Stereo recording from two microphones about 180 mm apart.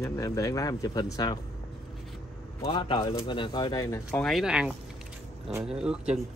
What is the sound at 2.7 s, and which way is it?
Speech, 25° left (ahead or behind).